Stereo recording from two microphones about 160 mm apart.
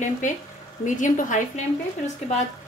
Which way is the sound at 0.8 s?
50° left (ahead or behind).